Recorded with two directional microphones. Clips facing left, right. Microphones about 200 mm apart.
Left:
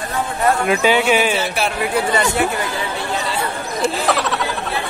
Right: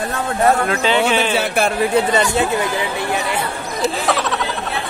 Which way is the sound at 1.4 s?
50° right (ahead or behind).